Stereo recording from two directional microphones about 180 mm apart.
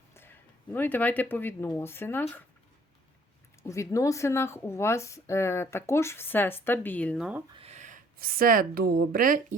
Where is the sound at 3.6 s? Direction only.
15° left (ahead or behind).